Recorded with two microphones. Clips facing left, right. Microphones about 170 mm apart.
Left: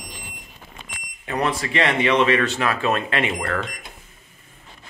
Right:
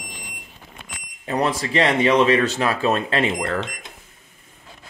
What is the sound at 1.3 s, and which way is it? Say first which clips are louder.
Speech: right 2 dB; 30° right (ahead or behind).